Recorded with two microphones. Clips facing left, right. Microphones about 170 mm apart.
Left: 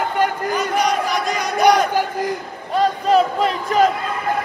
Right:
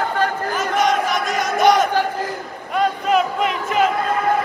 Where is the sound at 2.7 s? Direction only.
35° left (ahead or behind).